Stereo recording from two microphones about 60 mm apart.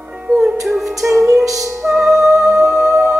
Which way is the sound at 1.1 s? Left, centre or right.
Right.